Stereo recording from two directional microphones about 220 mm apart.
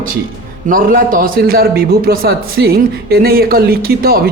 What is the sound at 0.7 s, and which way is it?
A man's voice, 40° right (ahead or behind).